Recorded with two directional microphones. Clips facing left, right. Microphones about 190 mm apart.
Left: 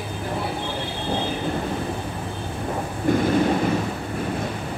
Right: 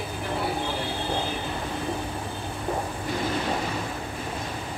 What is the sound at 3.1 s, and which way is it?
Thunder, 50° left (ahead or behind).